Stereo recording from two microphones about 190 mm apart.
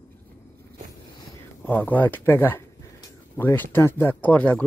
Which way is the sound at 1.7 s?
10° left (ahead or behind).